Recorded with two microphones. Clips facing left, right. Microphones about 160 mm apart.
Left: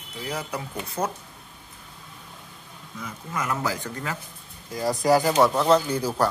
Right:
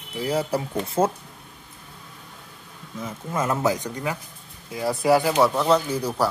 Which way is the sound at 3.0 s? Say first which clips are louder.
Right 5 dB; 25° right (ahead or behind).